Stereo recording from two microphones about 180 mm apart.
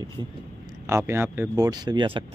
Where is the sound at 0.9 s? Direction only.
15° right (ahead or behind).